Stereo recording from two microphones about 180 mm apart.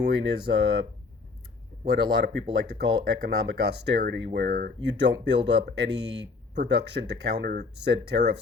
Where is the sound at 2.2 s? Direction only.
70° right (ahead or behind).